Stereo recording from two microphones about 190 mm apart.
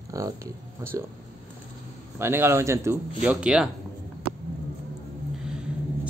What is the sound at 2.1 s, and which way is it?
Speech, 15° right (ahead or behind).